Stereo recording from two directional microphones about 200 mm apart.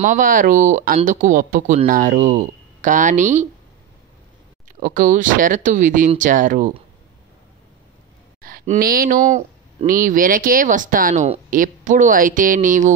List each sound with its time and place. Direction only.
0.0 s speech: 40° right (ahead or behind)
4.7 s speech: 40° right (ahead or behind)
8.4 s speech: 45° right (ahead or behind)